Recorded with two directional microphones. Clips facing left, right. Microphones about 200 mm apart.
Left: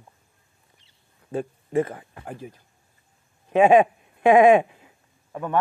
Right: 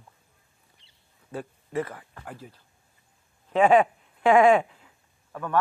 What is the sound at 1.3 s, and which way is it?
Speech, 25° left (ahead or behind).